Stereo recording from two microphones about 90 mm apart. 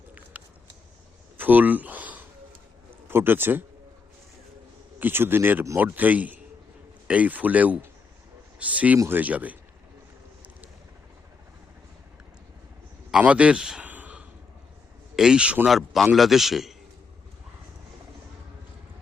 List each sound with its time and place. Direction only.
0.4 s a sound: 15° right (ahead or behind)
1.4 s a man's voice: 20° right (ahead or behind)
4.9 s a man's voice: 25° right (ahead or behind)
13.1 s a man's voice: 10° right (ahead or behind)
13.8 s a sound: 20° right (ahead or behind)
15.1 s a man's voice: 5° right (ahead or behind)